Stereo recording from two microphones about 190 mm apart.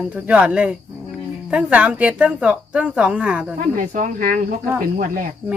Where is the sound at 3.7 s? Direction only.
45° right (ahead or behind).